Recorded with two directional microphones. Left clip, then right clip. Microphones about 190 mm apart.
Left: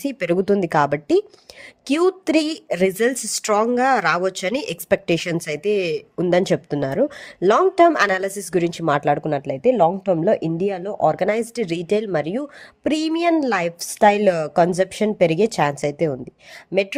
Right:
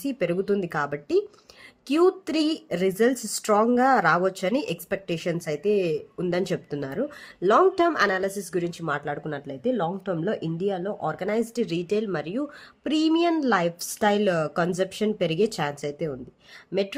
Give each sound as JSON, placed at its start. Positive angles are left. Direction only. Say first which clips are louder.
{"t": 0.0, "sound": "a woman's voice", "louder": "left 5 dB", "side_deg": 40}